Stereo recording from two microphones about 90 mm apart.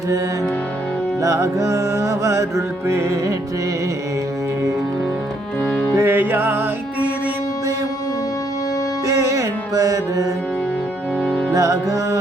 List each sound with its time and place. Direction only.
1.2 s music: 35° right (ahead or behind)
5.9 s music: 25° right (ahead or behind)
9.0 s music: 35° right (ahead or behind)
11.2 s music: 10° left (ahead or behind)
11.5 s music: 40° right (ahead or behind)